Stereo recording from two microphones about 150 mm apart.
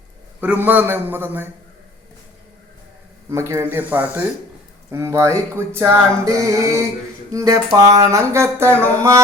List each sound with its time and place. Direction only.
0.4 s a man's voice: 10° right (ahead or behind)
3.2 s a man's voice: 20° right (ahead or behind)